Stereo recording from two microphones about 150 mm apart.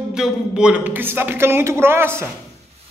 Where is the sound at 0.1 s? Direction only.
5° right (ahead or behind).